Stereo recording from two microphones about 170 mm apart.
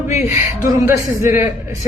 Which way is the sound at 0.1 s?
15° right (ahead or behind).